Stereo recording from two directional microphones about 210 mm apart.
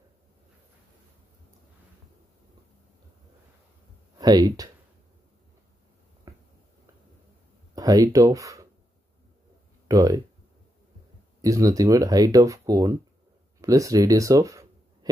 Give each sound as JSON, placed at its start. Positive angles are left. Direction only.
{"t": 4.2, "sound": "speech", "side_deg": -20}
{"t": 7.7, "sound": "speech", "side_deg": -15}
{"t": 9.8, "sound": "speech", "side_deg": -15}
{"t": 11.4, "sound": "speech", "side_deg": -15}